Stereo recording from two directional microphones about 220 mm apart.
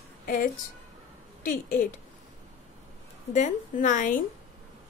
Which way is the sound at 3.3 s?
35° left (ahead or behind).